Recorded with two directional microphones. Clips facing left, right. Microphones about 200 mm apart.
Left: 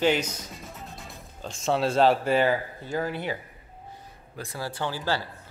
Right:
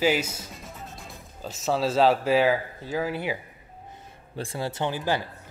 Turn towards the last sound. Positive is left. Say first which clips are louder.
# right 2 dB
turn(degrees=-20)  # may be behind; listen again after turning